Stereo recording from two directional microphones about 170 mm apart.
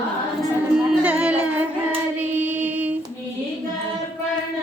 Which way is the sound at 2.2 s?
10° right (ahead or behind).